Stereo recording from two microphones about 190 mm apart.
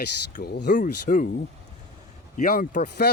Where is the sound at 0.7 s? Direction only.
45° left (ahead or behind).